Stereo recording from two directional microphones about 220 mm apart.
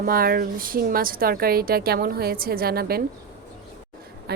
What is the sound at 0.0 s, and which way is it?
A woman's voice, 40° right (ahead or behind).